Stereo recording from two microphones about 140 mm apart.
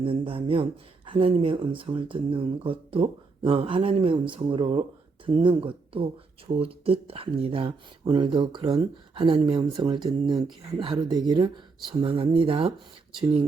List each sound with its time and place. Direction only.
0.0 s speech: 40° right (ahead or behind)